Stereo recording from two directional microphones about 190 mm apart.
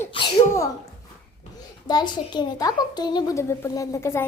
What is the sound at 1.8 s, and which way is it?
A child's voice, 20° left (ahead or behind).